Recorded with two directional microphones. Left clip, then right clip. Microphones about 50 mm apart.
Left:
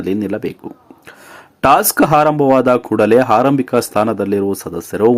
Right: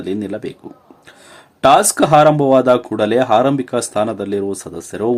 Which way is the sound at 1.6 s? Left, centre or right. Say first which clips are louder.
Even; left.